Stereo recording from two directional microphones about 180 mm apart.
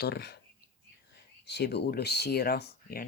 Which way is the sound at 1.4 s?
70° left (ahead or behind).